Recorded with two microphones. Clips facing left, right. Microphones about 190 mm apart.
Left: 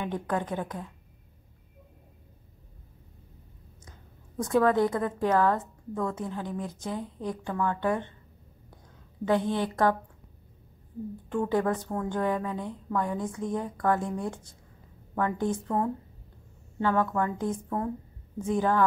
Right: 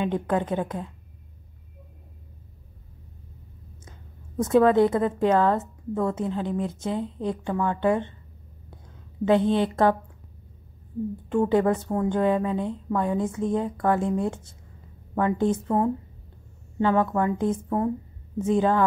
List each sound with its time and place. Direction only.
0.0 s a woman's voice: 20° right (ahead or behind)
4.4 s a woman's voice: 20° right (ahead or behind)
9.2 s a woman's voice: 20° right (ahead or behind)
11.2 s a woman's voice: 20° right (ahead or behind)